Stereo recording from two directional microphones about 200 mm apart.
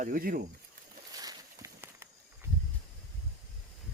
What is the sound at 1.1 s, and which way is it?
Walk, 20° right (ahead or behind).